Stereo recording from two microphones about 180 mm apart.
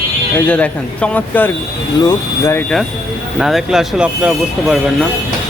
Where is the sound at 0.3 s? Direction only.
5° left (ahead or behind).